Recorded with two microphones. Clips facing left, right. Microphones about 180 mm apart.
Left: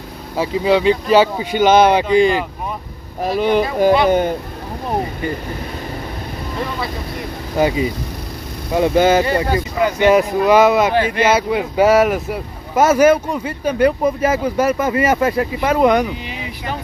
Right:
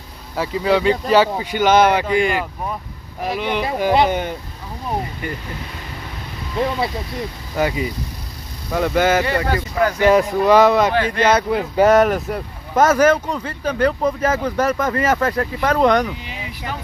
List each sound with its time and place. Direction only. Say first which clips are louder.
0.4 s speech: left 2 dB; 20° left (ahead or behind)
3.3 s speech: left 5 dB; 40° left (ahead or behind)
7.5 s speech: left 4 dB; 25° left (ahead or behind)
9.2 s speech: left 3 dB; 30° left (ahead or behind)
9.5 s speech: left 1 dB; 15° left (ahead or behind)
10.4 s speech: even; 5° left (ahead or behind)